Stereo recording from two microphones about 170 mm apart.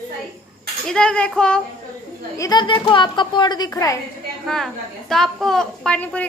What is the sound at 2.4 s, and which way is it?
A woman's voice, 25° left (ahead or behind).